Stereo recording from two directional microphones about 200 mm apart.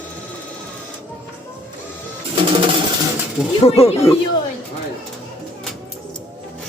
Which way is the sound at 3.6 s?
30° left (ahead or behind).